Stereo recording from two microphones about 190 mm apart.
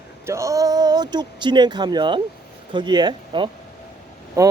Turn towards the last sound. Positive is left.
turn(degrees=-15)  # may be behind; listen again after turning